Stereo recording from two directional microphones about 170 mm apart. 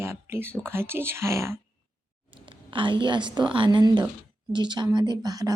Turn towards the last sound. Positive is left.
turn(degrees=-20)  # may be behind; listen again after turning